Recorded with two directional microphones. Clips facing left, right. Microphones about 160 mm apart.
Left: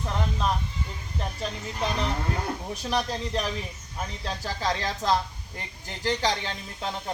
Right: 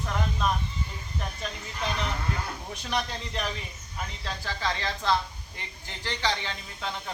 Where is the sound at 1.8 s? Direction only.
35° left (ahead or behind).